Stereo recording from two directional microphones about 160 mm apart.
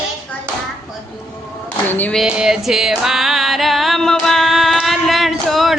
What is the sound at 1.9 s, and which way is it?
Speech, 10° left (ahead or behind).